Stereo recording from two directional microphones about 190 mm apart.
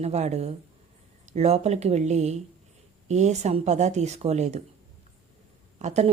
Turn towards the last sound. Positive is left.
turn(degrees=-35)  # may be behind; listen again after turning